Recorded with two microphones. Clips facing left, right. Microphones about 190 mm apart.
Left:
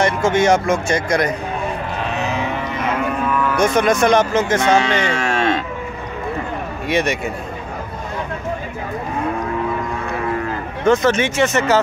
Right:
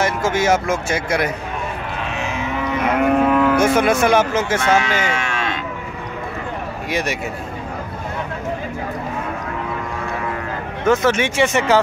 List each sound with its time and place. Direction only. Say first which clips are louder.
0.0 s speech: left 3 dB; 5° right (ahead or behind)
2.0 s cattle: left 4 dB; 35° left (ahead or behind)
3.0 s livestock: right 8 dB; 60° right (ahead or behind)
3.5 s speech: even; 5° right (ahead or behind)
4.7 s speech: left 2 dB; 30° left (ahead or behind)
6.9 s speech: left 4 dB; centre (ahead or behind)
10.9 s speech: left 1 dB; 10° right (ahead or behind)